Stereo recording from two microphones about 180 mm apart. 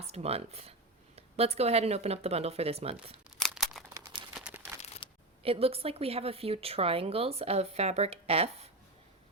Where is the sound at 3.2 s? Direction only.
Centre (ahead or behind).